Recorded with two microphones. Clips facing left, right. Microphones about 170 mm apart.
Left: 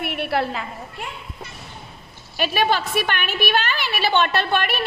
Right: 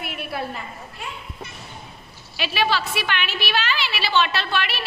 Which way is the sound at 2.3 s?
50° left (ahead or behind).